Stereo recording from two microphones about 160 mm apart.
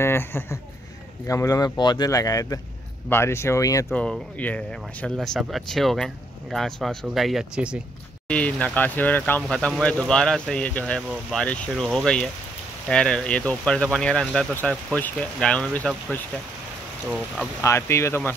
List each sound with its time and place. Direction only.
0.0 s speech: 15° left (ahead or behind)
3.9 s speech: 5° left (ahead or behind)
8.3 s speech: 10° left (ahead or behind)
17.6 s speech: 15° left (ahead or behind)